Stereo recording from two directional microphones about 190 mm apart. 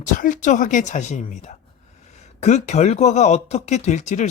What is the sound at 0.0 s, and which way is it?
Speech, 40° left (ahead or behind).